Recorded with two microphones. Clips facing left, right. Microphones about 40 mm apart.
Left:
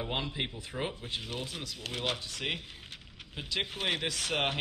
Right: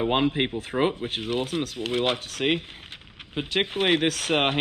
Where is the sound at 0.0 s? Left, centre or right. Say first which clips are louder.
Right 12 dB; right.